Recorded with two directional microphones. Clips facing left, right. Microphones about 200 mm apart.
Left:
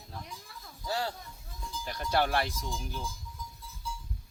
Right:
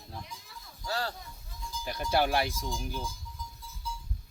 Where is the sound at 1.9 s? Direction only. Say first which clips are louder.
Right 1 dB; 10° right (ahead or behind).